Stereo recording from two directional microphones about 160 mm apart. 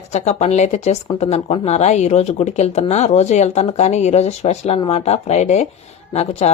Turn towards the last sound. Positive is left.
turn(degrees=40)  # may be behind; listen again after turning